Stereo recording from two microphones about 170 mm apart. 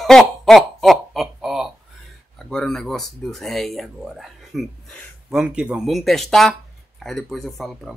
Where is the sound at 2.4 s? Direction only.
5° left (ahead or behind).